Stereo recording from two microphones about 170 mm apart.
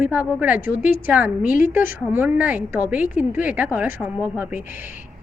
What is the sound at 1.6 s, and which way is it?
Speech, 55° left (ahead or behind).